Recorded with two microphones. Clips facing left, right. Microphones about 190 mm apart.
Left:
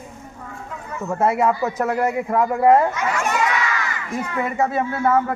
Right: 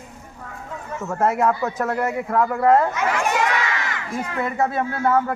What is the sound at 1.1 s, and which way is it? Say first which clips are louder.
Speech: left 1 dB; 10° left (ahead or behind).